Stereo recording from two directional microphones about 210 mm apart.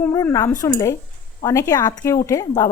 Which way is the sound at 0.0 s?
10° left (ahead or behind).